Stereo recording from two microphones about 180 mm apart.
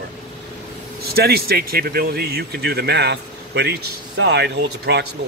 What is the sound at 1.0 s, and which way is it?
Speech, 60° right (ahead or behind).